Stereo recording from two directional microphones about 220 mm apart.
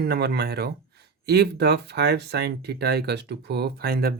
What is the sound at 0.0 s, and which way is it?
Speech, 45° right (ahead or behind).